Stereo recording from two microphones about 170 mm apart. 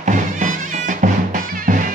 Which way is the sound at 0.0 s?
50° right (ahead or behind).